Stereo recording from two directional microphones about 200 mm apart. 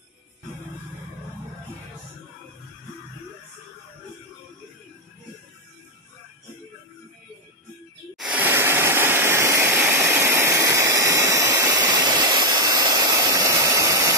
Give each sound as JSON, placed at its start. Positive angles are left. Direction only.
{"t": 8.2, "sound": "waterfall", "side_deg": -5}